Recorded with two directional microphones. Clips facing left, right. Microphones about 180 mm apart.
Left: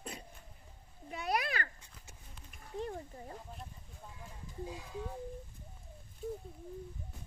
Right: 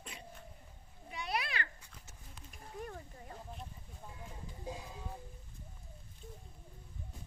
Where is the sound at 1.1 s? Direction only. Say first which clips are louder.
Left 4 dB; 45° left (ahead or behind).